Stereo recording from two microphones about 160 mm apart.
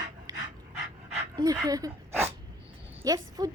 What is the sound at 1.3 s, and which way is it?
Dog, 25° right (ahead or behind).